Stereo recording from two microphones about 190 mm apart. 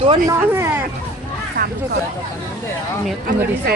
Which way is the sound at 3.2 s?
50° right (ahead or behind).